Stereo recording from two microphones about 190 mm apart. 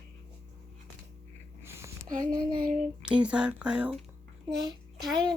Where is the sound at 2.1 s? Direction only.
45° right (ahead or behind).